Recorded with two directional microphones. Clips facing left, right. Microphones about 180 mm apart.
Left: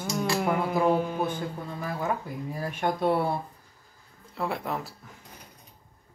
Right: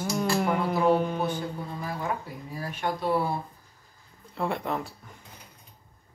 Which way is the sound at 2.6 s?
50° left (ahead or behind).